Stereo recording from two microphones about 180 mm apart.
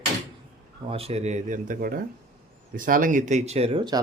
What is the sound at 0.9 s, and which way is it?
Speech, 35° right (ahead or behind).